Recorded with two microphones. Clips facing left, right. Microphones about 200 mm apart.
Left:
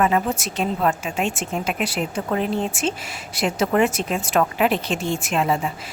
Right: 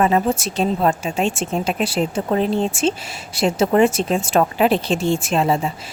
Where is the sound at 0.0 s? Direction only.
30° right (ahead or behind).